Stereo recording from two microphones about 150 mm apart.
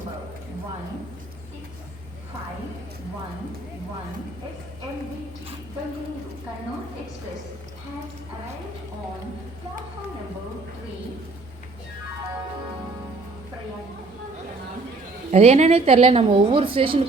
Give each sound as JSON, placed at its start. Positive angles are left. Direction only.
{"t": 15.3, "sound": "a woman's voice", "side_deg": -45}